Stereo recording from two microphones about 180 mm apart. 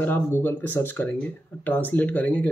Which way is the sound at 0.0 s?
10° left (ahead or behind).